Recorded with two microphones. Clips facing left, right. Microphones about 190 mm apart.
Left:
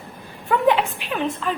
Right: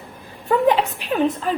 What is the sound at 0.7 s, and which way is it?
Speech, 40° right (ahead or behind).